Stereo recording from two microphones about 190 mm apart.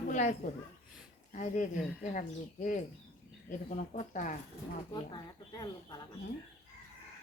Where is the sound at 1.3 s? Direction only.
40° left (ahead or behind).